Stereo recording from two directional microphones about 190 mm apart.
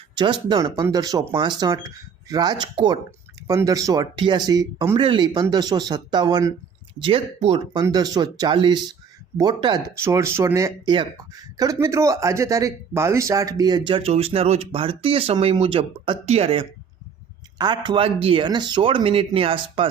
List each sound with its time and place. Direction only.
0.2 s speech: 25° right (ahead or behind)